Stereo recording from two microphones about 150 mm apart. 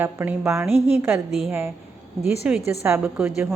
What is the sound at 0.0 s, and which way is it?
A woman's voice, 15° right (ahead or behind).